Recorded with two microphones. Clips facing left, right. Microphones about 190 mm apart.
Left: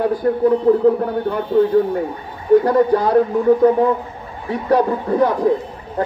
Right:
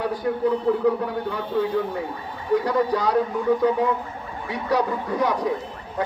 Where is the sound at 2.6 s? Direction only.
55° left (ahead or behind).